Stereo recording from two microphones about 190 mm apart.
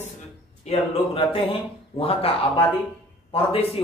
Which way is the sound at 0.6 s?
30° left (ahead or behind).